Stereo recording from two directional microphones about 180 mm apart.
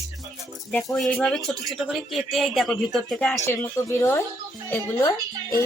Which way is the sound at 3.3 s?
15° left (ahead or behind).